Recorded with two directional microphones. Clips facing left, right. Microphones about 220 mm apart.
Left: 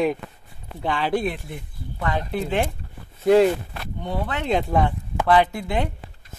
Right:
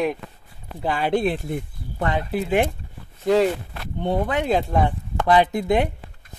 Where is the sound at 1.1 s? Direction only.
35° right (ahead or behind).